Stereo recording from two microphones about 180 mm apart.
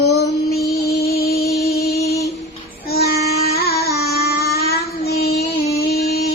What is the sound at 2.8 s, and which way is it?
Child singing, 60° left (ahead or behind).